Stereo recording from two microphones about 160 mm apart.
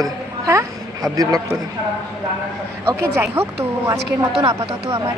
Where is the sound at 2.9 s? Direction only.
15° right (ahead or behind).